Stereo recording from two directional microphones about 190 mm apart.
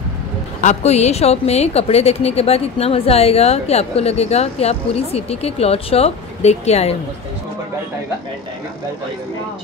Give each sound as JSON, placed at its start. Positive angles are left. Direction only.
{"t": 0.6, "sound": "a woman's voice", "side_deg": 35}